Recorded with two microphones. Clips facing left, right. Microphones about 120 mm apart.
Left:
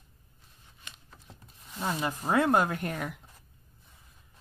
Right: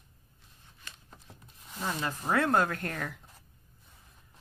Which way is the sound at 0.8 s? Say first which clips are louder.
Even; 20° left (ahead or behind).